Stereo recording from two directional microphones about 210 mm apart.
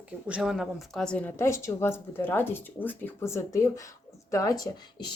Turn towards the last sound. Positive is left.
turn(degrees=20)  # may be behind; listen again after turning